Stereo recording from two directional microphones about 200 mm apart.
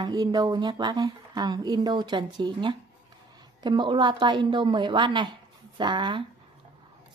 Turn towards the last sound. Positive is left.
turn(degrees=-20)  # may be behind; listen again after turning